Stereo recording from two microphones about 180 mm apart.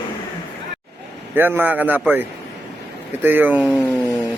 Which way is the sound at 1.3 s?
10° right (ahead or behind).